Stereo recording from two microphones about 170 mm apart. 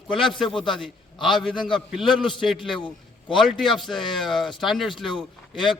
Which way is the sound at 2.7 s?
30° left (ahead or behind).